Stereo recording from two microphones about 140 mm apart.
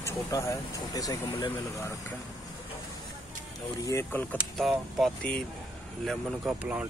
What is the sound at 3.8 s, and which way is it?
Speech, 15° left (ahead or behind).